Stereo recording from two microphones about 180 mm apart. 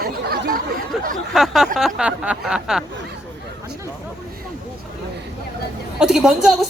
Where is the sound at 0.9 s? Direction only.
5° right (ahead or behind).